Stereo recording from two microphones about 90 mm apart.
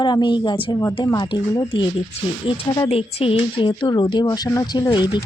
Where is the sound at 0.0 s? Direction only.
55° left (ahead or behind).